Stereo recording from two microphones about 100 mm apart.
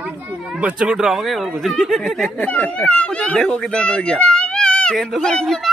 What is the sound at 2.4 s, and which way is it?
Speech, 15° left (ahead or behind).